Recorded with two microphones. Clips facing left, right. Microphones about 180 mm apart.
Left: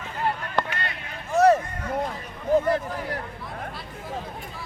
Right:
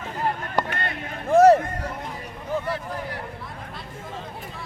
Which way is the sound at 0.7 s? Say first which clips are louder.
Right 3 dB; 55° right (ahead or behind).